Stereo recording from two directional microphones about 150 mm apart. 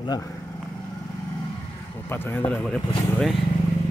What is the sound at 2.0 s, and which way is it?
Speech, 15° left (ahead or behind).